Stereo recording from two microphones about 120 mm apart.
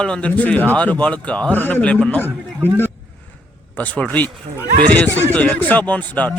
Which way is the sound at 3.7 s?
10° left (ahead or behind).